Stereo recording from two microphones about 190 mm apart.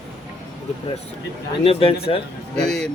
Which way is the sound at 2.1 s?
30° left (ahead or behind).